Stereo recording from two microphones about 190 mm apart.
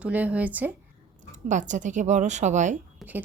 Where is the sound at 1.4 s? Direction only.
40° right (ahead or behind).